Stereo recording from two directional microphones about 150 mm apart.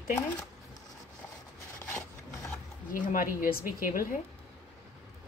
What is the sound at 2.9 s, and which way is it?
Speech, 65° left (ahead or behind).